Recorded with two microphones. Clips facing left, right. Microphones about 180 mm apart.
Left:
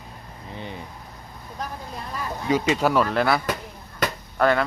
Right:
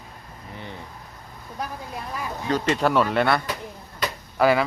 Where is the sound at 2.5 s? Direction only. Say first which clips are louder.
Left 1 dB; 10° left (ahead or behind).